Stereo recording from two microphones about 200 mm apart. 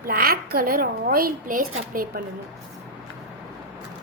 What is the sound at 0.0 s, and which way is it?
Speech, 45° right (ahead or behind).